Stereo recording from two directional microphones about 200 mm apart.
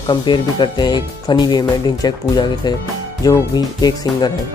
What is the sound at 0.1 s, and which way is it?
Speech, 20° left (ahead or behind).